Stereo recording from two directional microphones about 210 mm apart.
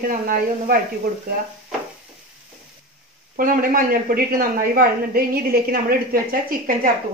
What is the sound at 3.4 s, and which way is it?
A woman's voice, 40° right (ahead or behind).